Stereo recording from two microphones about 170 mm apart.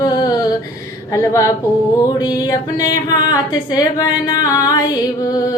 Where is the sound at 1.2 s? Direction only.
20° left (ahead or behind).